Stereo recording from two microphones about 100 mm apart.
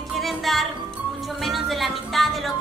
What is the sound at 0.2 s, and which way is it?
Speech, centre (ahead or behind).